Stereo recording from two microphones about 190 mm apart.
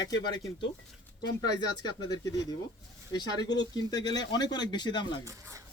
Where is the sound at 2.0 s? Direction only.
20° left (ahead or behind).